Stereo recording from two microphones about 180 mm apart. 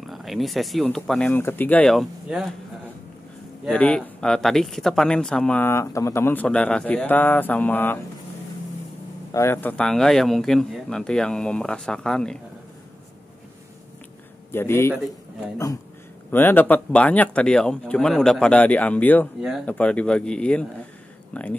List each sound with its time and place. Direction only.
0.0 s speech: centre (ahead or behind)
3.7 s speech: 10° left (ahead or behind)
9.3 s speech: 15° left (ahead or behind)
14.5 s speech: 15° left (ahead or behind)
19.4 s speech: centre (ahead or behind)